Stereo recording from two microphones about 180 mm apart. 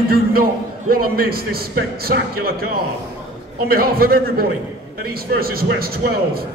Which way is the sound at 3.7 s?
55° right (ahead or behind).